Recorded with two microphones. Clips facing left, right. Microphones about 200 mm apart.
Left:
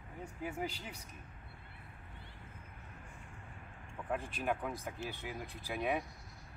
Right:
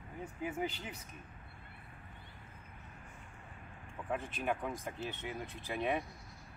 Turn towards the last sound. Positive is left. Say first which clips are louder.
# right 1 dB
turn(degrees=5)  # may be behind; listen again after turning